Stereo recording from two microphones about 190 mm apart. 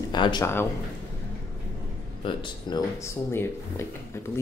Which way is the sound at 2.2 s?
25° left (ahead or behind).